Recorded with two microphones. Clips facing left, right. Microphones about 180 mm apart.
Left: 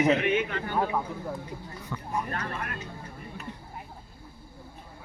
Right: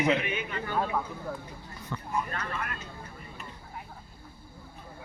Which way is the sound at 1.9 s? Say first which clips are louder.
Even; 5° left (ahead or behind).